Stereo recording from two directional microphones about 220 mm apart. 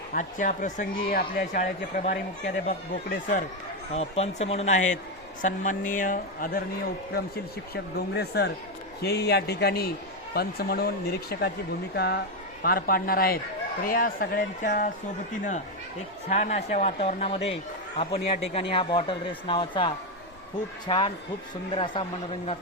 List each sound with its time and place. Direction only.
0.1 s speech: 35° left (ahead or behind)
7.7 s speech: 45° left (ahead or behind)
16.3 s speech: 30° left (ahead or behind)